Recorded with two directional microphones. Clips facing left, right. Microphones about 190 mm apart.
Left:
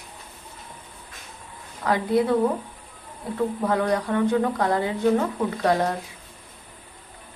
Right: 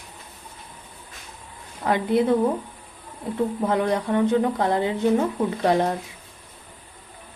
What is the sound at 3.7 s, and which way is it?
Speech, 20° right (ahead or behind).